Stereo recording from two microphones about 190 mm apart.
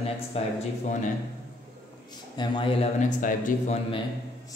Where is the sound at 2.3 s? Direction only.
25° left (ahead or behind).